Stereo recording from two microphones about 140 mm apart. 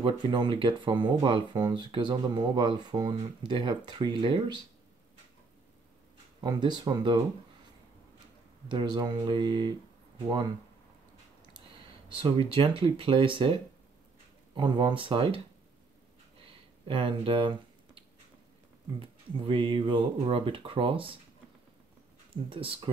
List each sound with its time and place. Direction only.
0.0 s speech: 35° right (ahead or behind)
6.4 s speech: 30° right (ahead or behind)
8.6 s speech: 35° right (ahead or behind)
12.1 s speech: 35° right (ahead or behind)
16.8 s speech: 40° right (ahead or behind)
22.5 s speech: 40° right (ahead or behind)